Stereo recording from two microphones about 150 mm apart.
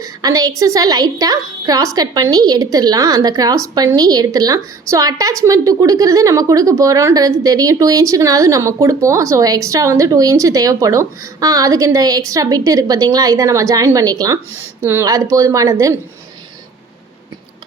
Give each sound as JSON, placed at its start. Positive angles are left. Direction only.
{"t": 0.0, "sound": "a woman's voice", "side_deg": -25}